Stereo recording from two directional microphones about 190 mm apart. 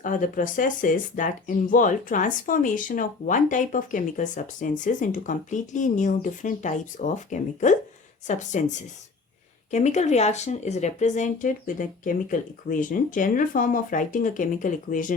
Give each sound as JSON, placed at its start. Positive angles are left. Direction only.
{"t": 0.0, "sound": "speech", "side_deg": 45}
{"t": 9.7, "sound": "speech", "side_deg": 40}